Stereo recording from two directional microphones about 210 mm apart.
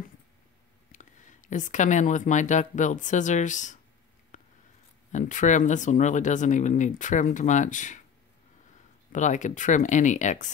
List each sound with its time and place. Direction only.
0.9 s speech: 35° left (ahead or behind)
4.3 s a sound: 35° left (ahead or behind)
5.1 s speech: 35° left (ahead or behind)
9.1 s speech: 35° left (ahead or behind)